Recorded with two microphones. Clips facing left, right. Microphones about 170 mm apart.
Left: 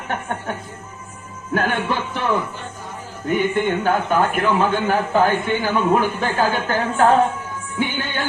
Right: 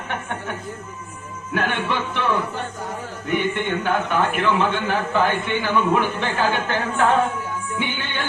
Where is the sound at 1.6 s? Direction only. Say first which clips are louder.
Left 2 dB; 40° left (ahead or behind).